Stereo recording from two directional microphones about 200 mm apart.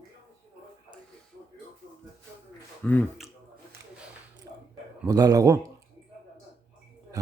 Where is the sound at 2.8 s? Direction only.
5° left (ahead or behind).